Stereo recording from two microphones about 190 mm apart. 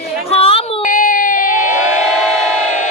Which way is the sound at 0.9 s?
45° left (ahead or behind).